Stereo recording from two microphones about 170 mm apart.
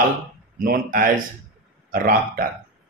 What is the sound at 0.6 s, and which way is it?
Speech, 55° right (ahead or behind).